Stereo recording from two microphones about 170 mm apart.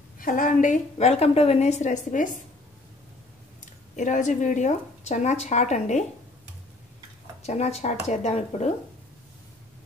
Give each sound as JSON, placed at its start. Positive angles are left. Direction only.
{"t": 0.2, "sound": "a woman's voice", "side_deg": 55}
{"t": 3.9, "sound": "a woman's voice", "side_deg": 45}
{"t": 7.4, "sound": "a woman's voice", "side_deg": 40}